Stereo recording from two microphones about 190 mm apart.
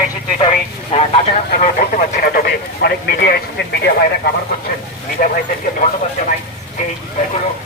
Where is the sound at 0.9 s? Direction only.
30° left (ahead or behind).